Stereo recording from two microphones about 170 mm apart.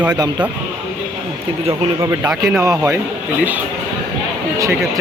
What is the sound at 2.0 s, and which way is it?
Speech, 20° right (ahead or behind).